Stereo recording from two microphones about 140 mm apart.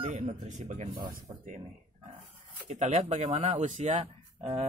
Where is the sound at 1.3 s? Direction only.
35° right (ahead or behind).